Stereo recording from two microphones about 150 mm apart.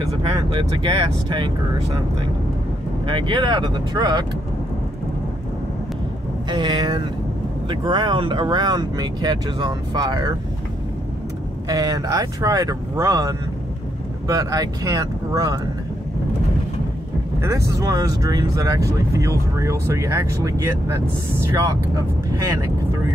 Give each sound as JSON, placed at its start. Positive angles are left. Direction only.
{"t": 0.1, "sound": "speech", "side_deg": -35}
{"t": 3.1, "sound": "speech", "side_deg": -35}
{"t": 6.5, "sound": "speech", "side_deg": -25}
{"t": 11.6, "sound": "speech", "side_deg": -25}
{"t": 17.4, "sound": "speech", "side_deg": -20}